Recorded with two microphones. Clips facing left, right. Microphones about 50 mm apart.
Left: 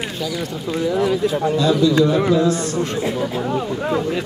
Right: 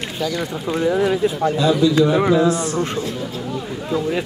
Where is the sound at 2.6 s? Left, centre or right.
Centre.